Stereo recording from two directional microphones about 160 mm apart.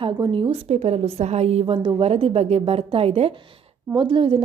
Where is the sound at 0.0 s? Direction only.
35° right (ahead or behind).